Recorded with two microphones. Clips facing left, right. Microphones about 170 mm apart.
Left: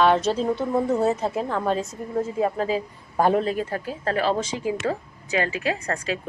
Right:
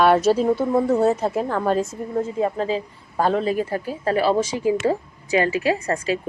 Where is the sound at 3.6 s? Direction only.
10° right (ahead or behind).